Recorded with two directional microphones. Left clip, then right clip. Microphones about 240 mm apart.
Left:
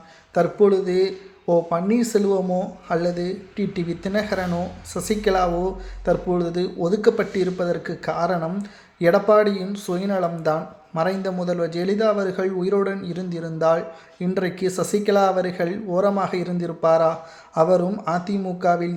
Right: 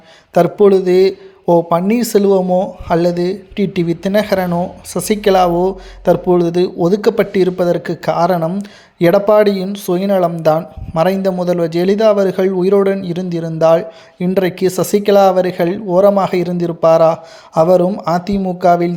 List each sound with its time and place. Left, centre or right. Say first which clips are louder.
0.3 s speech: right 8 dB; right